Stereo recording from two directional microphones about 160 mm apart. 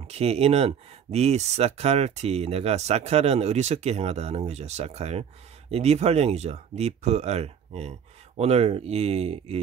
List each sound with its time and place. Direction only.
0.0 s speech: 40° right (ahead or behind)